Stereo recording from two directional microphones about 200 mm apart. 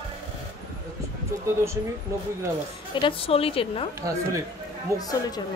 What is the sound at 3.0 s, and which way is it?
Speech, 25° left (ahead or behind).